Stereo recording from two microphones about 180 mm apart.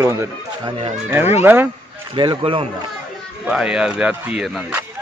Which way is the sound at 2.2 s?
25° right (ahead or behind).